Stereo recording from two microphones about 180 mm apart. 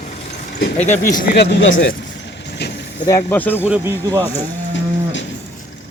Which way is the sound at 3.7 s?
15° right (ahead or behind).